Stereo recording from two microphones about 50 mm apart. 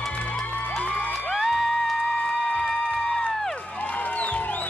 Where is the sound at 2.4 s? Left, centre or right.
Centre.